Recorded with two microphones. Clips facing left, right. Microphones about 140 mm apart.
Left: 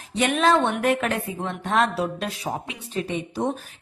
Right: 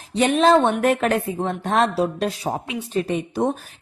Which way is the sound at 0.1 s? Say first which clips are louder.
Right 4 dB; 30° right (ahead or behind).